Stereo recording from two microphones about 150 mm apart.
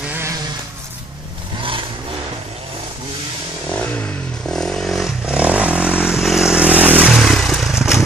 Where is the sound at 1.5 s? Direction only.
35° right (ahead or behind).